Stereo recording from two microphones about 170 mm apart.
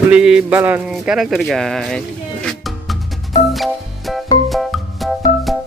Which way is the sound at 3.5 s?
Centre (ahead or behind).